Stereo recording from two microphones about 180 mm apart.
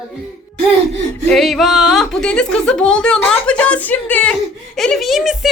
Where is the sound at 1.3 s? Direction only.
Centre (ahead or behind).